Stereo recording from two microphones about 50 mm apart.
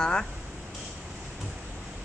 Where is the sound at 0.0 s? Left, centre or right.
Centre.